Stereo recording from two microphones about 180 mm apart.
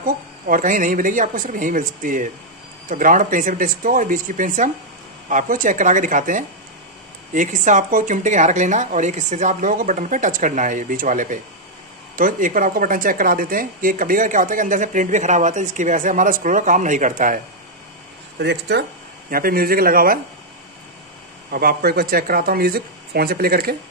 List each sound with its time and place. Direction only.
0.0 s speech: 50° right (ahead or behind)
18.4 s speech: 70° right (ahead or behind)
19.3 s speech: 55° right (ahead or behind)
21.5 s speech: 55° right (ahead or behind)